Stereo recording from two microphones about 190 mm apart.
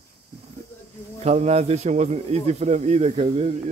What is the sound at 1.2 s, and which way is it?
A man's voice, 35° right (ahead or behind).